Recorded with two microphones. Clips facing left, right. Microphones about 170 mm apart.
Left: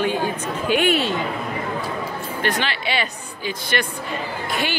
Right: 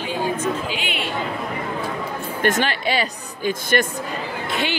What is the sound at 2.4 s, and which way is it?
A woman's voice, 45° right (ahead or behind).